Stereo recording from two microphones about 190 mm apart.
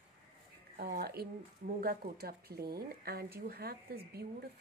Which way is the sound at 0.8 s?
55° right (ahead or behind).